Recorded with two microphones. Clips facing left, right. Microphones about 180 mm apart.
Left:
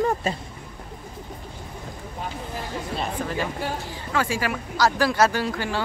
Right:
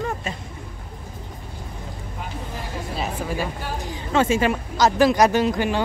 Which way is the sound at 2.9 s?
5° right (ahead or behind).